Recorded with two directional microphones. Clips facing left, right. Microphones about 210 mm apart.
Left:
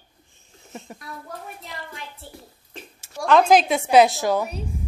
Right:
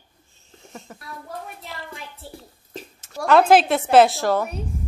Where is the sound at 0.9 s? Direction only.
15° left (ahead or behind).